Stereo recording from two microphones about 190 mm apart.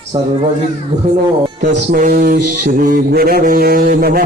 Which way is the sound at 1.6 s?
45° right (ahead or behind).